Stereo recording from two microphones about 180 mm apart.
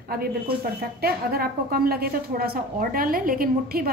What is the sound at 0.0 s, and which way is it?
A woman's voice, 55° right (ahead or behind).